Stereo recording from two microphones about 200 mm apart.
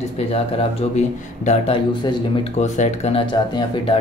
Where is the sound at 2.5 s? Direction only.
35° left (ahead or behind).